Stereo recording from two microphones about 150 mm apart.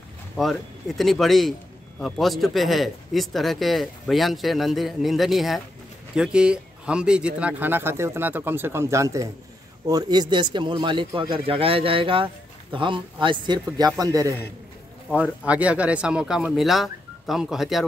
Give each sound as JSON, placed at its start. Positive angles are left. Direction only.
{"t": 0.4, "sound": "speech", "side_deg": 0}
{"t": 15.4, "sound": "speech", "side_deg": -10}